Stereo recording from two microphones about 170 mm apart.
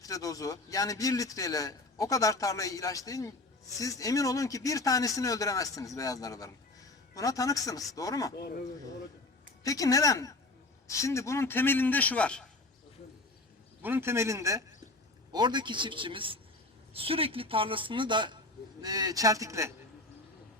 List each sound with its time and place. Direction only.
0.0 s a man's voice: 20° left (ahead or behind)
9.6 s a man's voice: 20° left (ahead or behind)
13.8 s a man's voice: 15° right (ahead or behind)